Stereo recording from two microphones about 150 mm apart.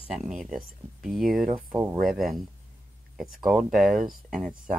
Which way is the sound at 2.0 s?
Centre (ahead or behind).